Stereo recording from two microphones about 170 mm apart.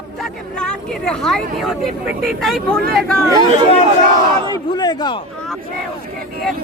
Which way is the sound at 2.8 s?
60° right (ahead or behind).